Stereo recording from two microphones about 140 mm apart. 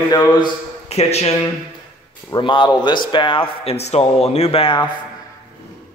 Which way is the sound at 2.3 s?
35° left (ahead or behind).